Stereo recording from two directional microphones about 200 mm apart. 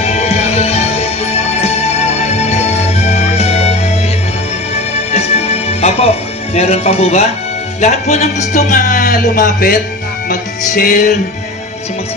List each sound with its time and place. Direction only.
0.0 s music: 30° left (ahead or behind)
5.1 s music: 30° left (ahead or behind)
6.5 s a man's voice: 30° left (ahead or behind)